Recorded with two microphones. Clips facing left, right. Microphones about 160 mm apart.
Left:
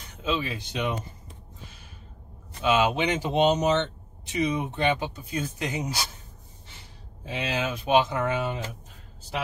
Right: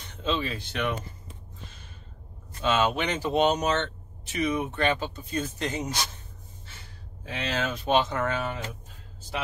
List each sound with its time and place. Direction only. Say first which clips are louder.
0.2 s speech: even; 10° left (ahead or behind)
2.6 s speech: left 2 dB; 15° left (ahead or behind)
7.3 s speech: left 1 dB; 10° left (ahead or behind)